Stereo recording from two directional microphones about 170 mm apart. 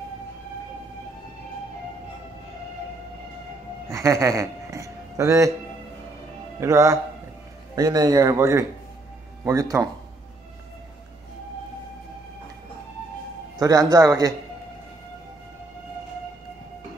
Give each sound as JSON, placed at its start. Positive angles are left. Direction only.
{"t": 3.9, "sound": "speech", "side_deg": -20}
{"t": 6.6, "sound": "a man's voice", "side_deg": -15}
{"t": 13.6, "sound": "a man's voice", "side_deg": -20}